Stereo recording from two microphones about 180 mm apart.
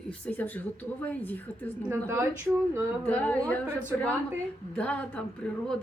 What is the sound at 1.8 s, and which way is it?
Speech, 15° right (ahead or behind).